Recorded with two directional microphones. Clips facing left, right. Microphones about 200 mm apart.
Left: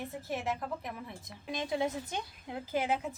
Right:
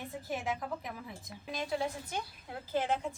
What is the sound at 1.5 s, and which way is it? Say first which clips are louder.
A woman's voice: left 2 dB; 20° left (ahead or behind).